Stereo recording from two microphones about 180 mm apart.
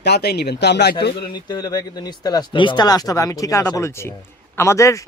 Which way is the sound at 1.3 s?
20° left (ahead or behind).